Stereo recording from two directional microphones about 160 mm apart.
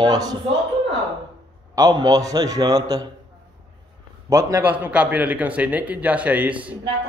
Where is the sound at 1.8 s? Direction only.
25° right (ahead or behind).